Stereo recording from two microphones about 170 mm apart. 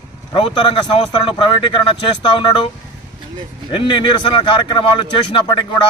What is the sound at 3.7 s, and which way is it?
A man's voice, 30° left (ahead or behind).